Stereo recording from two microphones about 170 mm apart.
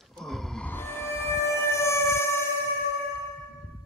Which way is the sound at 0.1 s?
Centre (ahead or behind).